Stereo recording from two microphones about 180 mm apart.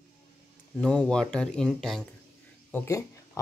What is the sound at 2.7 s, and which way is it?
Speech, 15° left (ahead or behind).